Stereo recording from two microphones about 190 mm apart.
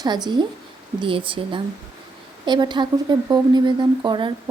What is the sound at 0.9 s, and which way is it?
Speech, 25° right (ahead or behind).